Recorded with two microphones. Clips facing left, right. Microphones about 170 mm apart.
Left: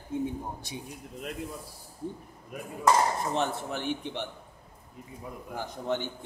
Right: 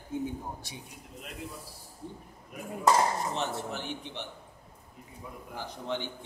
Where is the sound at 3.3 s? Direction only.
55° left (ahead or behind).